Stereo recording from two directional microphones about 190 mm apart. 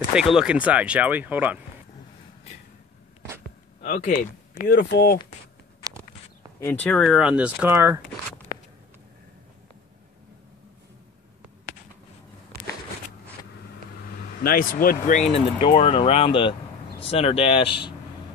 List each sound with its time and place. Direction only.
0.1 s speech: 5° right (ahead or behind)
3.3 s a sound: 10° right (ahead or behind)
3.8 s speech: 40° left (ahead or behind)
4.6 s speech: 55° left (ahead or behind)
6.6 s speech: 10° left (ahead or behind); by 8.0 s 10° right (ahead or behind)
14.4 s speech: 50° left (ahead or behind)
15.3 s speech: 35° left (ahead or behind)